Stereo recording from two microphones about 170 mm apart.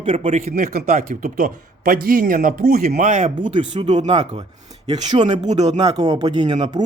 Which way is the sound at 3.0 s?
45° right (ahead or behind).